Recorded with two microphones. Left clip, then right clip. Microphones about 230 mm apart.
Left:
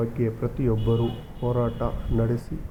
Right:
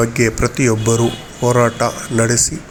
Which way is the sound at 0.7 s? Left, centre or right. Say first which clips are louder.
Right 10 dB; right.